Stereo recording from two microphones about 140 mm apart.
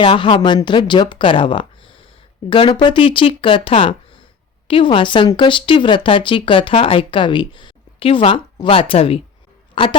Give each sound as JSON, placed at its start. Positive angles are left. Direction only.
{"t": 0.0, "sound": "speech", "side_deg": 35}